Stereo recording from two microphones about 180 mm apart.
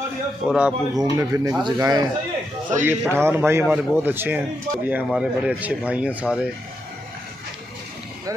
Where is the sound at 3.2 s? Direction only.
15° right (ahead or behind).